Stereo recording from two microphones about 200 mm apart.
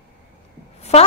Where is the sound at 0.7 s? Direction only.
30° left (ahead or behind).